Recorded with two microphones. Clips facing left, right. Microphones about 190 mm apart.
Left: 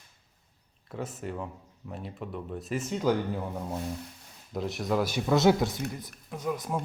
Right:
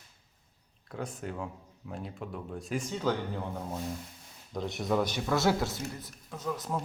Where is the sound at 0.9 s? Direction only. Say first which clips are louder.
Left 2 dB; 5° left (ahead or behind).